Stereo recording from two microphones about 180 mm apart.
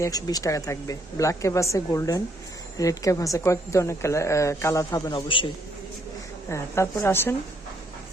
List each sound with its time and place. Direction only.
0.0 s a woman's voice: 20° left (ahead or behind)
6.5 s a woman's voice: 15° left (ahead or behind)